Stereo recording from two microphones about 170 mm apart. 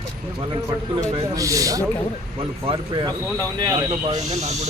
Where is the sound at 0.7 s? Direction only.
20° right (ahead or behind).